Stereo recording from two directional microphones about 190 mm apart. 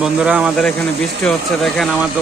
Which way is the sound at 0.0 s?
5° right (ahead or behind).